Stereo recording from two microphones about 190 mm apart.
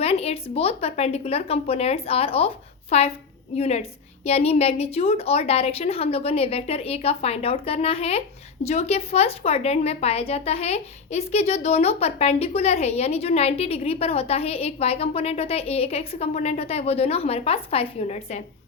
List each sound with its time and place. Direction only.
0.0 s a woman's voice: 30° left (ahead or behind)